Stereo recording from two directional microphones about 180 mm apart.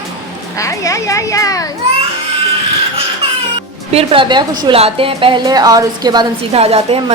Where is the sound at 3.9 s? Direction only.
30° right (ahead or behind).